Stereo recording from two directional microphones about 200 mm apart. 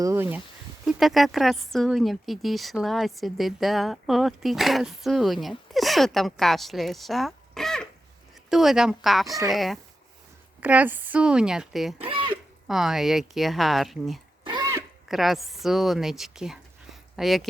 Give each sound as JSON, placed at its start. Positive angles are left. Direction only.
{"t": 0.0, "sound": "speech", "side_deg": -15}
{"t": 11.9, "sound": "speech", "side_deg": -25}
{"t": 12.6, "sound": "speech", "side_deg": 0}
{"t": 14.4, "sound": "a sound", "side_deg": -20}
{"t": 15.0, "sound": "a woman's voice", "side_deg": 0}